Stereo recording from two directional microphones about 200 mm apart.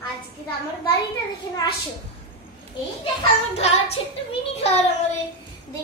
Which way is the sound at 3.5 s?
30° left (ahead or behind).